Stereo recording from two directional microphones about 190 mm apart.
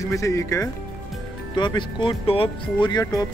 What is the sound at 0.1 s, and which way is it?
Speech, 15° left (ahead or behind).